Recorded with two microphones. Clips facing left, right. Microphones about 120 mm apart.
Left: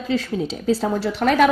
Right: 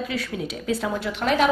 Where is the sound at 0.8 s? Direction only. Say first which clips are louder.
Left 4 dB; 45° left (ahead or behind).